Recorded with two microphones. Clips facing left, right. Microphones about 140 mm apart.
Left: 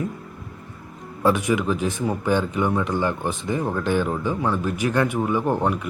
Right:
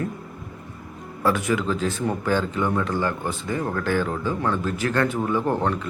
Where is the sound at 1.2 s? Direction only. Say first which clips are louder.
Left 2 dB; 20° left (ahead or behind).